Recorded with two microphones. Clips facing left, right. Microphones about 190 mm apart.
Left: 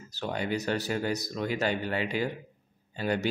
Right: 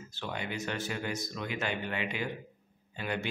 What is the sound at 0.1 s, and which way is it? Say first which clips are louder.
A man's voice: left 7 dB; 40° left (ahead or behind).